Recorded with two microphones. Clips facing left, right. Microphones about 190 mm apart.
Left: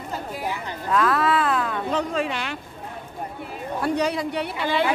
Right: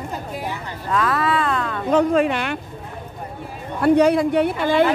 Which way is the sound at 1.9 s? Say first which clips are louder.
Right 12 dB; 55° right (ahead or behind).